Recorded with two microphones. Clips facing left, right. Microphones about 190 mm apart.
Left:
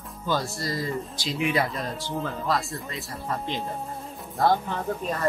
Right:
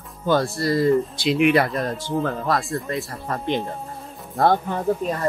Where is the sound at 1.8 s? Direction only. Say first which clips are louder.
Right 7 dB; 55° right (ahead or behind).